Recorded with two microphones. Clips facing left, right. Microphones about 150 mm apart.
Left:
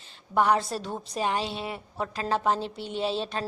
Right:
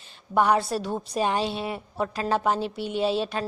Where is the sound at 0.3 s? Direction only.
15° right (ahead or behind).